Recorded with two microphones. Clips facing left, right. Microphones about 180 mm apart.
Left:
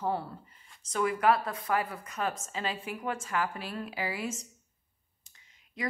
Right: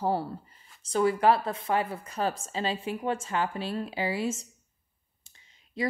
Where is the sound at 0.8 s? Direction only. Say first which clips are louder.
Right 4 dB; 30° right (ahead or behind).